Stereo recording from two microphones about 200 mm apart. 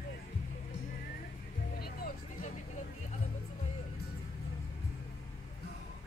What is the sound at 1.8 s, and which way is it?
Music, 45° left (ahead or behind).